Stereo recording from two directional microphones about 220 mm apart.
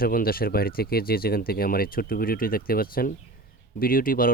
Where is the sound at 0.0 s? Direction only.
40° left (ahead or behind).